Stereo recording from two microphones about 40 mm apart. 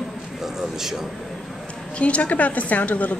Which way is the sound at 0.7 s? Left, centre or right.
Centre.